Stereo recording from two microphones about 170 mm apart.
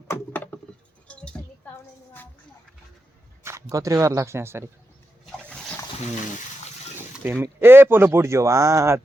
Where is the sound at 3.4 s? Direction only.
15° right (ahead or behind).